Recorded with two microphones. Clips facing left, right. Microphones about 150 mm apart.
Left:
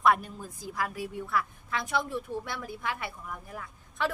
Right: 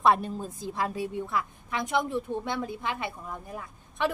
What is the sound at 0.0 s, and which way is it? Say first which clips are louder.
A woman's voice: right 2 dB; 25° right (ahead or behind).